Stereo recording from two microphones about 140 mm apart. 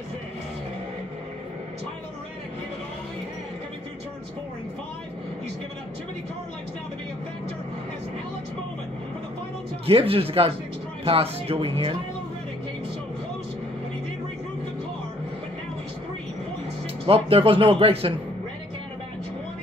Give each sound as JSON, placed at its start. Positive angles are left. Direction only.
{"t": 9.8, "sound": "speech", "side_deg": -40}
{"t": 17.0, "sound": "speech", "side_deg": -40}